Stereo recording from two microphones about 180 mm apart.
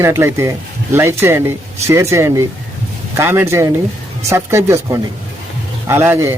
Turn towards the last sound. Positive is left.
turn(degrees=-15)  # may be behind; listen again after turning